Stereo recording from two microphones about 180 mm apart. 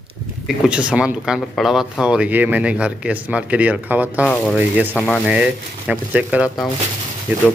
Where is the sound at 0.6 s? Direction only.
5° right (ahead or behind).